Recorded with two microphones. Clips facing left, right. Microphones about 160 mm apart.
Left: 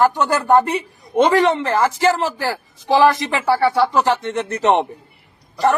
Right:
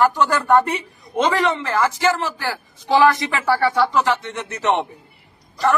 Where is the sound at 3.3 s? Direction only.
20° left (ahead or behind).